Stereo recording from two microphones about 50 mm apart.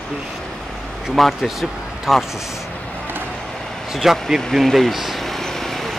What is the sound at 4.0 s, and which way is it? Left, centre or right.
Speech, centre.